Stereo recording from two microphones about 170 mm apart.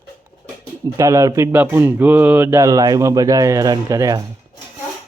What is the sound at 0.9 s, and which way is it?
Speech, 15° right (ahead or behind).